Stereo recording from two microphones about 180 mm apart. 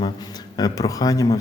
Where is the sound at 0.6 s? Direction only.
20° left (ahead or behind).